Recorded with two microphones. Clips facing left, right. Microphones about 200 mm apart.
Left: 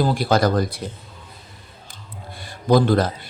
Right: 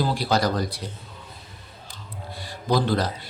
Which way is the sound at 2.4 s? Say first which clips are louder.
Left 6 dB; 50° left (ahead or behind).